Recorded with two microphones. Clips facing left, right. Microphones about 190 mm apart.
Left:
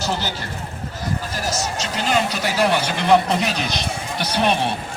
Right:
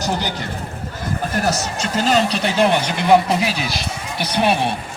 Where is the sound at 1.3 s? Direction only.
60° right (ahead or behind).